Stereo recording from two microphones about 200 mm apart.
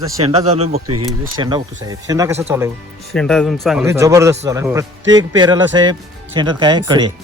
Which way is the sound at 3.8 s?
15° right (ahead or behind).